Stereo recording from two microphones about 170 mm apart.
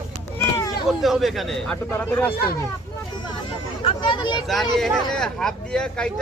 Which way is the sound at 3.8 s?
25° left (ahead or behind).